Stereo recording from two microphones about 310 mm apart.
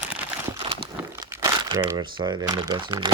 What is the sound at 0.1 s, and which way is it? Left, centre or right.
Crumpling, centre.